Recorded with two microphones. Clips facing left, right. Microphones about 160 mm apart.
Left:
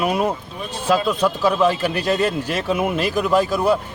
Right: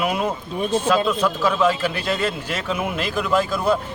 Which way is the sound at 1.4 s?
35° left (ahead or behind).